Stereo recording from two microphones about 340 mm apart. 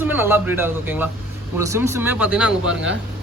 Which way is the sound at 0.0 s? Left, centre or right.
Centre.